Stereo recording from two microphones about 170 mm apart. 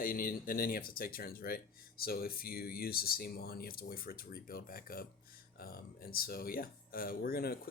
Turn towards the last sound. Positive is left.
turn(degrees=65)  # may be behind; listen again after turning